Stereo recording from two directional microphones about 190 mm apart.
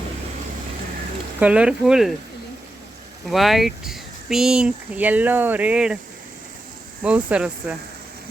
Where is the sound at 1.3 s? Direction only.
5° right (ahead or behind).